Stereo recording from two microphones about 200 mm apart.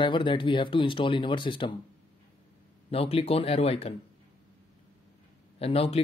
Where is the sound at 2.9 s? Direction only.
30° left (ahead or behind).